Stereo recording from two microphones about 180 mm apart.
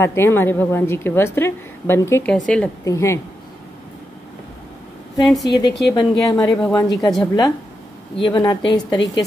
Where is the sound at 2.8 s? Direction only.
15° left (ahead or behind).